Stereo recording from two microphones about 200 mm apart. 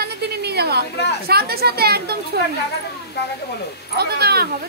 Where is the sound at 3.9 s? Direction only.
55° right (ahead or behind).